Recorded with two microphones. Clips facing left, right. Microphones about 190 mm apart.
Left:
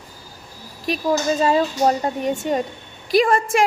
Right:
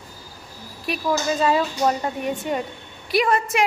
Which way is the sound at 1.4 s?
35° left (ahead or behind).